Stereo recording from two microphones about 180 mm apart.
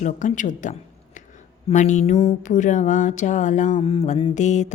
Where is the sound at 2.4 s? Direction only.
45° left (ahead or behind).